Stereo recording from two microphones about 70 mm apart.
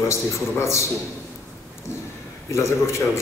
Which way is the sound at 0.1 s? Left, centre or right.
Left.